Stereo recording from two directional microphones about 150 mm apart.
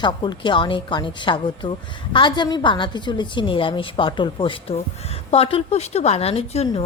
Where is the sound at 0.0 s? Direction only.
30° left (ahead or behind).